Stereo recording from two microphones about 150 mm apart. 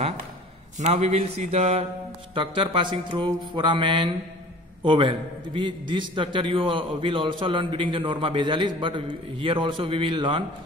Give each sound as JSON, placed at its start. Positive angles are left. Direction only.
{"t": 0.7, "sound": "speech", "side_deg": -50}
{"t": 2.3, "sound": "a man's voice", "side_deg": -35}